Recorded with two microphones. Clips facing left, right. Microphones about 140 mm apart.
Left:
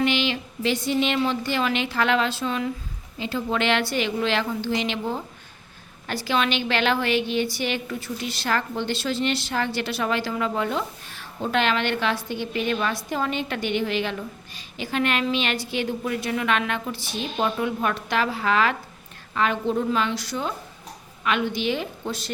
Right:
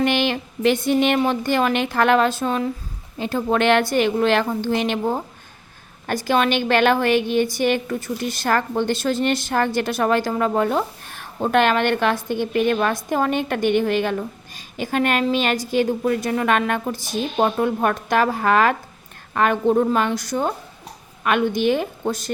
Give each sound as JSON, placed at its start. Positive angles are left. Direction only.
{"t": 0.0, "sound": "a woman's voice", "side_deg": -50}